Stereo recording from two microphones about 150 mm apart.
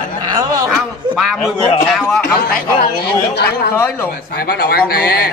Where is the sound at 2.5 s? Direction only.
85° left.